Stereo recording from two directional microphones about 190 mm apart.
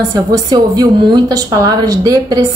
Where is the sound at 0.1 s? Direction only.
20° right (ahead or behind).